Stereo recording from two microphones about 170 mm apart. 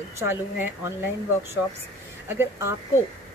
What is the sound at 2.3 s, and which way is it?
Speech, 15° right (ahead or behind).